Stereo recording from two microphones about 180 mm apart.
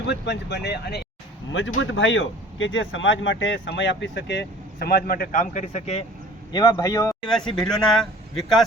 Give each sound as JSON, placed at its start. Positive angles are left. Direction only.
{"t": 0.0, "sound": "speech", "side_deg": 75}
{"t": 1.5, "sound": "speech", "side_deg": 90}
{"t": 6.5, "sound": "speech", "side_deg": 25}
{"t": 7.3, "sound": "speech", "side_deg": 5}